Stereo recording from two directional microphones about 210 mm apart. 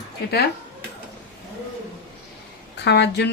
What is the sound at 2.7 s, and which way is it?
Speech, 55° left (ahead or behind).